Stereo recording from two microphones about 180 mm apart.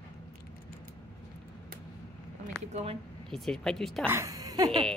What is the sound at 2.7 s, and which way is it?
Speech, 35° right (ahead or behind).